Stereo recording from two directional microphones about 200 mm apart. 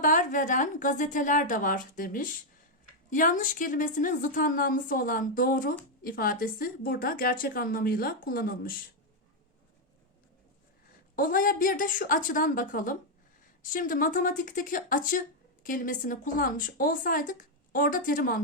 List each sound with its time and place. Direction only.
0.0 s a woman's voice: 40° left (ahead or behind)
11.1 s a woman's voice: 45° left (ahead or behind)